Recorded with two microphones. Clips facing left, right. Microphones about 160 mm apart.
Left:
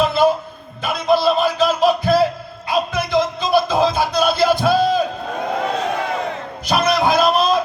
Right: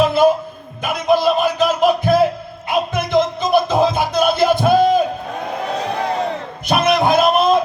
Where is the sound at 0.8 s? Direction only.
15° right (ahead or behind).